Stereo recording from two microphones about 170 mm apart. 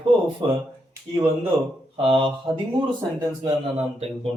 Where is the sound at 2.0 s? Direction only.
30° right (ahead or behind).